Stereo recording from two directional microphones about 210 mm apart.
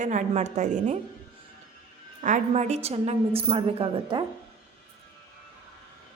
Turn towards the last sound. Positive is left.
turn(degrees=-25)  # may be behind; listen again after turning